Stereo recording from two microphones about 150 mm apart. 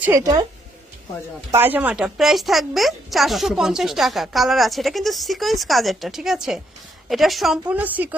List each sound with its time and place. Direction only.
0.0 s a woman's voice: 20° right (ahead or behind)
1.5 s speech: 15° right (ahead or behind)
7.7 s a woman's voice: 10° right (ahead or behind)